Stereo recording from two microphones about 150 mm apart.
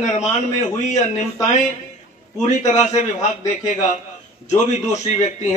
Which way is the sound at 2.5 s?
50° left (ahead or behind).